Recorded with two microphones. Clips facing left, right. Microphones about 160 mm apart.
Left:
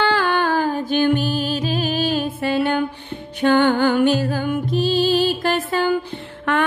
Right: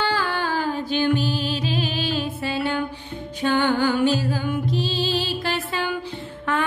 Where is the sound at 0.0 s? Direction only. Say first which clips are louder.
Left 5 dB; 60° left (ahead or behind).